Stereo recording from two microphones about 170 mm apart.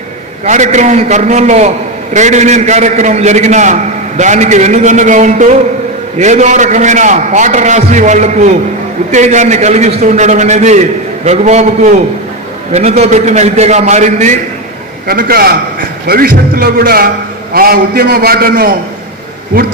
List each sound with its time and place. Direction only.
0.4 s a man's voice: 45° right (ahead or behind)
15.0 s a man's voice: 60° right (ahead or behind)